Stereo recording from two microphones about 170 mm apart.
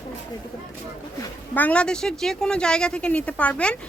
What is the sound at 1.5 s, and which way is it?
Speech, 10° left (ahead or behind).